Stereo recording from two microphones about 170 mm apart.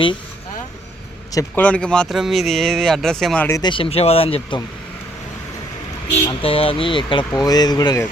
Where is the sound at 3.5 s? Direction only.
25° left (ahead or behind).